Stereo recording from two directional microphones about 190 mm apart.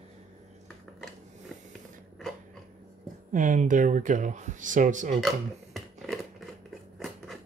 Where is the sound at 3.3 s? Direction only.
40° right (ahead or behind).